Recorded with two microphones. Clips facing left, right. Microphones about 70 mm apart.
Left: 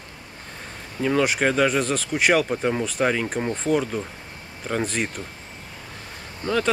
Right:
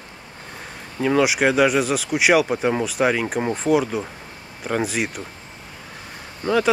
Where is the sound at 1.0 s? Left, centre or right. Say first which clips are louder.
Right 3 dB; centre.